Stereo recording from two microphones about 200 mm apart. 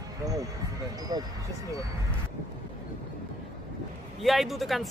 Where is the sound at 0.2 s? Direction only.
15° right (ahead or behind).